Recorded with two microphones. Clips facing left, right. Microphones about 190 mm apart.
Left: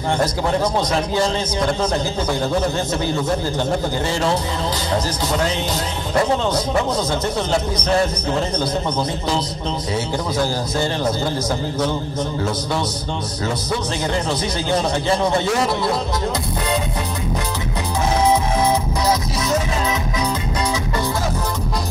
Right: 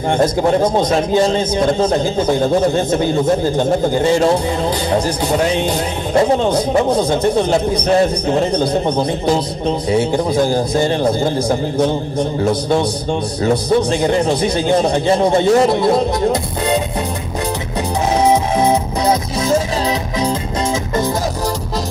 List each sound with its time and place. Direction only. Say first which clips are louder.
1.1 s a man's voice: right 6 dB; 20° right (ahead or behind)
4.9 s a man's voice: right 4 dB; 30° right (ahead or behind)
7.4 s a man's voice: right 6 dB; 55° right (ahead or behind)
7.9 s a man's voice: right 5 dB; 20° right (ahead or behind)
12.4 s a man's voice: right 7 dB; 25° right (ahead or behind)
14.0 s a man's voice: right 7 dB; 20° right (ahead or behind)
18.3 s music: right 4 dB; 20° right (ahead or behind)